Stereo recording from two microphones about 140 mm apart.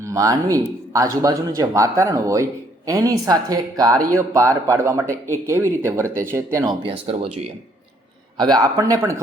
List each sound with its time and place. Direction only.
0.0 s speech: 25° right (ahead or behind)
6.9 s speech: 40° right (ahead or behind)
8.4 s speech: 30° right (ahead or behind)